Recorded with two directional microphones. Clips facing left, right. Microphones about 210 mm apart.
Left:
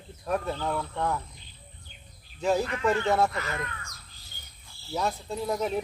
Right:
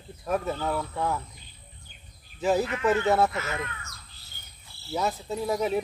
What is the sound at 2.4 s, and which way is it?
Speech, 5° right (ahead or behind).